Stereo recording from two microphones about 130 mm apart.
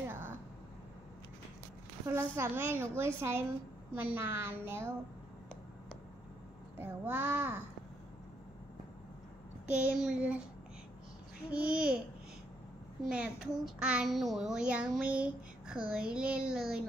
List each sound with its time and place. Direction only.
2.0 s speech: 20° right (ahead or behind)
6.8 s a child's voice: 15° right (ahead or behind)
9.7 s a child's voice: 10° right (ahead or behind)
11.5 s a child's voice: 10° right (ahead or behind)
13.1 s a child's voice: 10° right (ahead or behind)